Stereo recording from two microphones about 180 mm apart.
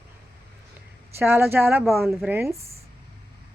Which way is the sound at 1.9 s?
Centre (ahead or behind).